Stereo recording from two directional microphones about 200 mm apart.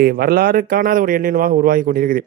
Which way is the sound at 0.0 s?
50° right (ahead or behind).